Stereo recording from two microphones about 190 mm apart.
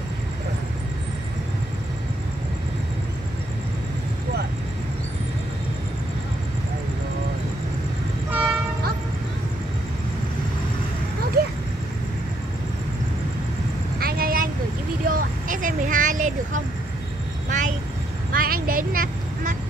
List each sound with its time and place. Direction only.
8.3 s train: 5° right (ahead or behind)
13.9 s vehicle: 50° right (ahead or behind)